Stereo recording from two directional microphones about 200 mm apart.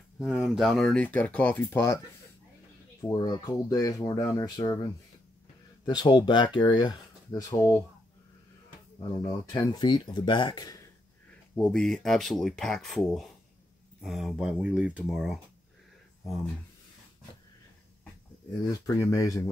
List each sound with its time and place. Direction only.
0.2 s speech: centre (ahead or behind); by 7.7 s 20° left (ahead or behind)
9.5 s speech: 20° left (ahead or behind)
11.5 s speech: centre (ahead or behind)
18.7 s speech: 15° left (ahead or behind)